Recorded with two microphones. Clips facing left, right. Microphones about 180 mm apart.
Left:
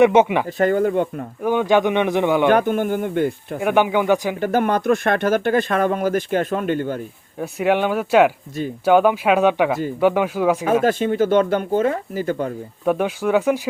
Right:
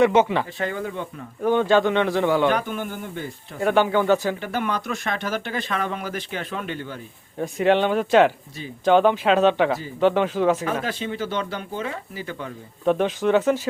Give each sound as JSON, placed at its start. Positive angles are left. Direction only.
{"t": 0.0, "sound": "speech", "side_deg": 20}
{"t": 0.4, "sound": "speech", "side_deg": 50}
{"t": 1.4, "sound": "speech", "side_deg": 10}
{"t": 2.5, "sound": "speech", "side_deg": 50}
{"t": 3.6, "sound": "speech", "side_deg": 15}
{"t": 4.4, "sound": "speech", "side_deg": 45}
{"t": 7.3, "sound": "speech", "side_deg": 10}
{"t": 10.8, "sound": "speech", "side_deg": 50}
{"t": 12.8, "sound": "speech", "side_deg": 10}